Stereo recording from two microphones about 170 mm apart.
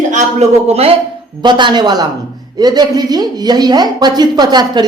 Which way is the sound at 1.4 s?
25° right (ahead or behind).